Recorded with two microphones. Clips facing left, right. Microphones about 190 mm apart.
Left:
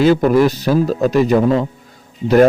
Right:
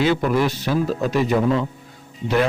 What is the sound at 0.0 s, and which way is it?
A man's voice, 40° left (ahead or behind).